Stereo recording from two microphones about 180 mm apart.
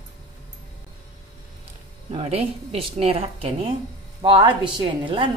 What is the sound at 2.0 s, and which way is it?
A woman's voice, 35° right (ahead or behind).